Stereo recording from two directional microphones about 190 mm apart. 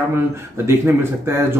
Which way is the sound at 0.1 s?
15° right (ahead or behind).